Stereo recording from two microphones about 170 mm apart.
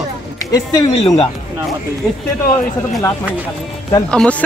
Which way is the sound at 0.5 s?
25° left (ahead or behind).